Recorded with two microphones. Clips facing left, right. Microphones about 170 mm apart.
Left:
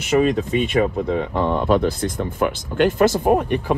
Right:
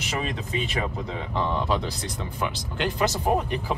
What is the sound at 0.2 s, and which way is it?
Speech, 50° left (ahead or behind).